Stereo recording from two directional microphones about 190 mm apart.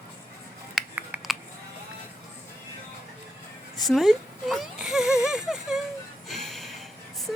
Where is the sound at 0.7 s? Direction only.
5° right (ahead or behind).